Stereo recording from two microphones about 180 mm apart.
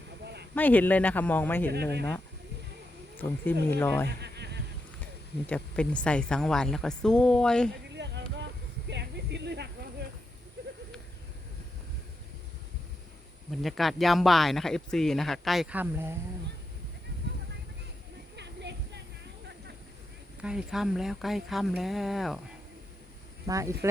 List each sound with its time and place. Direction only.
0.5 s a man's voice: 10° left (ahead or behind)
1.7 s speech: 65° right (ahead or behind)
3.2 s a man's voice: 10° left (ahead or behind)
4.2 s a sound: 70° right (ahead or behind)
5.5 s speech: 5° left (ahead or behind)
7.9 s a sound: 75° right (ahead or behind)
13.5 s speech: centre (ahead or behind)
20.4 s speech: 5° right (ahead or behind)
23.5 s speech: 15° right (ahead or behind)